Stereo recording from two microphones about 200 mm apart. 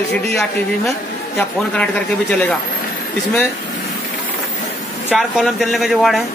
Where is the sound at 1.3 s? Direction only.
5° left (ahead or behind).